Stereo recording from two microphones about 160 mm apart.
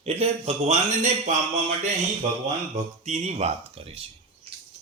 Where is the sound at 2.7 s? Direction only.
45° right (ahead or behind).